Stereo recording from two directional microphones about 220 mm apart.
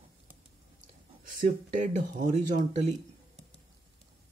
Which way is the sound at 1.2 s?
35° right (ahead or behind).